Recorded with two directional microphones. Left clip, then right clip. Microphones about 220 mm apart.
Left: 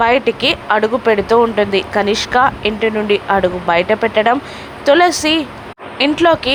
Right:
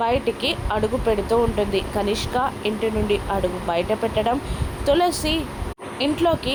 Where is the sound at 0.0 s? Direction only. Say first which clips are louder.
Left 9 dB; 15° left (ahead or behind).